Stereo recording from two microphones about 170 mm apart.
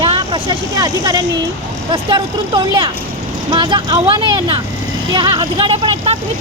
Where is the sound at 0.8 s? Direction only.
20° right (ahead or behind).